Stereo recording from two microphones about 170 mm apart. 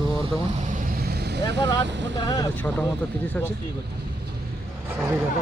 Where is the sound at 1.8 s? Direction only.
90° right.